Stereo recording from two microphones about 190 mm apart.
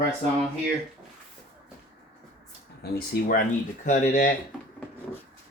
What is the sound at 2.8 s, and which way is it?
Speech, 50° left (ahead or behind).